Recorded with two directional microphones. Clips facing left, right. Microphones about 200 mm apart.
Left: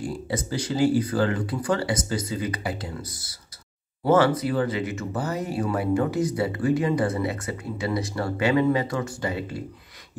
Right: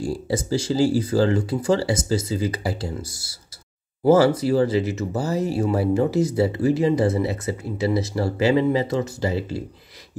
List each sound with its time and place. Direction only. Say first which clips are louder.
0.0 s speech: right 4 dB; 30° right (ahead or behind)
4.0 s speech: right 4 dB; 30° right (ahead or behind)